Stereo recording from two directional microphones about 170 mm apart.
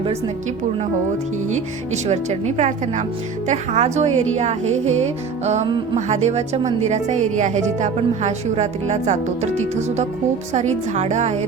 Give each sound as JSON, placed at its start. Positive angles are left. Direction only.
{"t": 1.9, "sound": "a woman's voice", "side_deg": -40}
{"t": 6.1, "sound": "a woman's voice", "side_deg": -40}